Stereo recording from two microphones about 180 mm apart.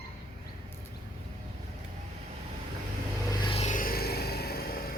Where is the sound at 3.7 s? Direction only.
50° left (ahead or behind).